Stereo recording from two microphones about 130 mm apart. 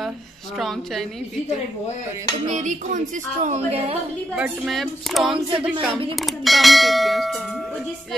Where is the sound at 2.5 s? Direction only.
70° right (ahead or behind); by 3.9 s 50° right (ahead or behind).